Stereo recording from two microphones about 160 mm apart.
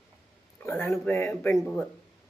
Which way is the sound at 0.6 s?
10° left (ahead or behind).